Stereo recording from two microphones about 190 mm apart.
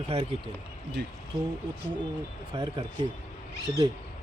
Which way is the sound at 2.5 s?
20° right (ahead or behind).